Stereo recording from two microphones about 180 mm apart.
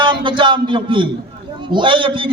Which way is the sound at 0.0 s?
25° right (ahead or behind).